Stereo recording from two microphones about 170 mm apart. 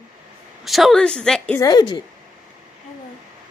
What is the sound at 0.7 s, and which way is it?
Speech, centre (ahead or behind).